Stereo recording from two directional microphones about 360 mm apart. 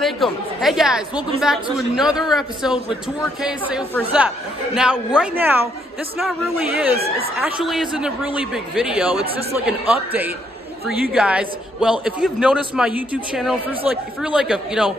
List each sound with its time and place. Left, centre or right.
0.0 s a man's voice: centre